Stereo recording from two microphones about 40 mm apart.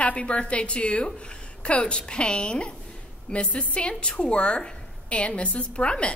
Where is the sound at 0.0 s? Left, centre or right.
Left.